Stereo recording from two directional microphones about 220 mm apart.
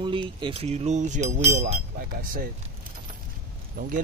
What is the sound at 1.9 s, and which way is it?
Speech, 40° right (ahead or behind).